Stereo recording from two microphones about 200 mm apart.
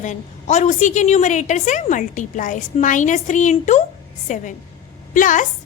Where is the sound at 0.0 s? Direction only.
35° left (ahead or behind).